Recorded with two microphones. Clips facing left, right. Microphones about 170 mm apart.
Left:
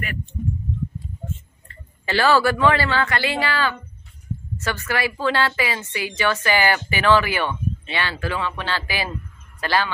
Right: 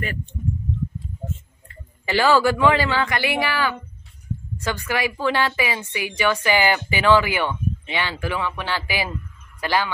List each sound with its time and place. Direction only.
0.0 s speech: 30° right (ahead or behind)
1.7 s a man's voice: 15° right (ahead or behind)